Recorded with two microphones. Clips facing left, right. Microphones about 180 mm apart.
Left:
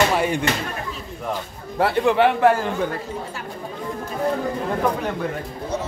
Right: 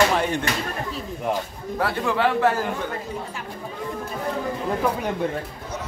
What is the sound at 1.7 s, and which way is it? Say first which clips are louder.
Speech: left 6 dB; 25° left (ahead or behind).